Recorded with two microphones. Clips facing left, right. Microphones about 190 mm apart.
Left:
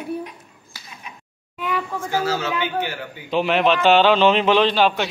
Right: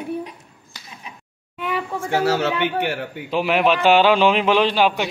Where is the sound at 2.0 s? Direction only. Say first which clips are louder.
Right 5 dB; 65° right (ahead or behind).